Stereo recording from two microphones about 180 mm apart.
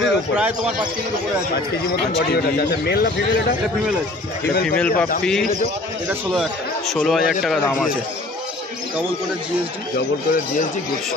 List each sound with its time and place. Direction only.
0.0 s speech: 5° right (ahead or behind)
2.1 s speech: 65° left (ahead or behind)
4.6 s a man's voice: 5° left (ahead or behind)
7.1 s a man's voice: centre (ahead or behind)